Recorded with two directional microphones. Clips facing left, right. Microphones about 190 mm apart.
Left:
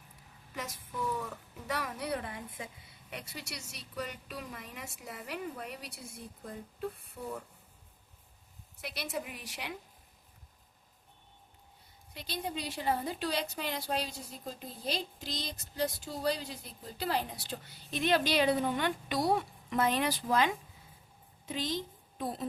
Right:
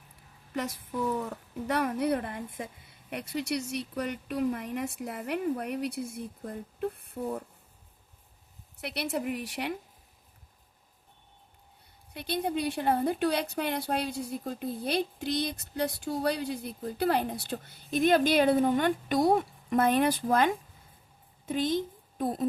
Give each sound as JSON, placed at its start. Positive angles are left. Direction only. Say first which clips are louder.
{"t": 0.5, "sound": "a woman's voice", "louder": "right 8 dB", "side_deg": -65}
{"t": 8.8, "sound": "a woman's voice", "louder": "right 6 dB", "side_deg": -65}
{"t": 12.1, "sound": "a woman's voice", "louder": "right 8 dB", "side_deg": -60}